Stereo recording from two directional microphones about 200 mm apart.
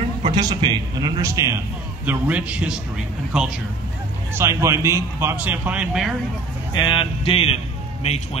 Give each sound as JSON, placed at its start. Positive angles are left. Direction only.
{"t": 0.3, "sound": "a man's voice", "side_deg": -20}
{"t": 4.3, "sound": "a man's voice", "side_deg": -15}
{"t": 6.7, "sound": "speech", "side_deg": 20}